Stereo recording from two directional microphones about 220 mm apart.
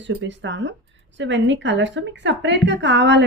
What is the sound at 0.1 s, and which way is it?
A woman's voice, 55° right (ahead or behind).